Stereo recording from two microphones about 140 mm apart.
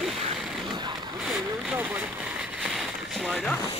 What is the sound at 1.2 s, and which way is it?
Vehicle, 5° right (ahead or behind).